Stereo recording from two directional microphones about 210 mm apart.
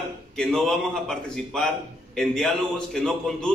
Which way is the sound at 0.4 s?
Centre (ahead or behind).